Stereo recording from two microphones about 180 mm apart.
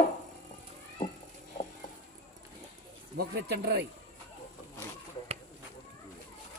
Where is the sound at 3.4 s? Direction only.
65° right (ahead or behind).